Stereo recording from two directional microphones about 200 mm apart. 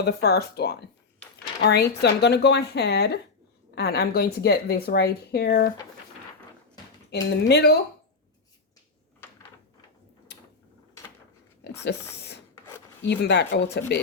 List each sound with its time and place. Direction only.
0.0 s speech: 55° left (ahead or behind)
7.1 s speech: 55° left (ahead or behind)
9.2 s a sound: 10° left (ahead or behind)
11.8 s speech: 55° left (ahead or behind)